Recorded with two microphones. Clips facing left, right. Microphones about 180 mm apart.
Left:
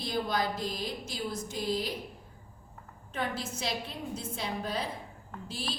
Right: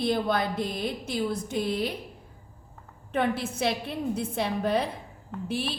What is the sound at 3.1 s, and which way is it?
A woman's voice, 60° right (ahead or behind).